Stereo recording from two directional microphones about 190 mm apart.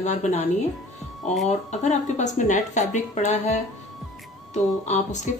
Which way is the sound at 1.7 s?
40° left (ahead or behind).